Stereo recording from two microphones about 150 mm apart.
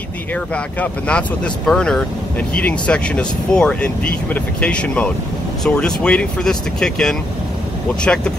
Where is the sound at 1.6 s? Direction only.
5° left (ahead or behind).